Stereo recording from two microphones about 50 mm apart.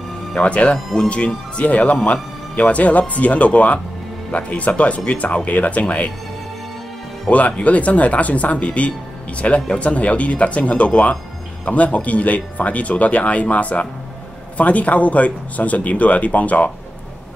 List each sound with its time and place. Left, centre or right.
0.3 s speech: left
7.2 s speech: left